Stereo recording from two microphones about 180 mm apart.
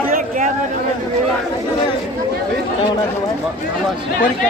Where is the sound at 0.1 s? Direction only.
45° right (ahead or behind).